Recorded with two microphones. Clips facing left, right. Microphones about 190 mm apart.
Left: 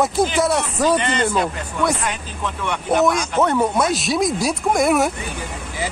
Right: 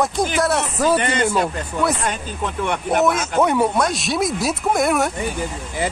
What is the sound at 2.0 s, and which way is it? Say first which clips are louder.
Speech: right 2 dB; 50° right (ahead or behind).